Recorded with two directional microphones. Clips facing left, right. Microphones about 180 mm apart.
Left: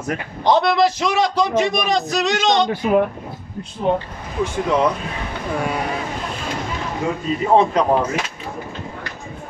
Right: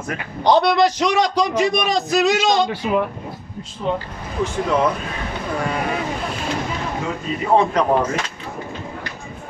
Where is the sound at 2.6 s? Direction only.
50° left (ahead or behind).